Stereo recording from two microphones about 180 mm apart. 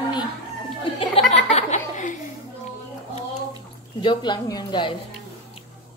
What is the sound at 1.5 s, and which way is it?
Chuckle, 40° left (ahead or behind).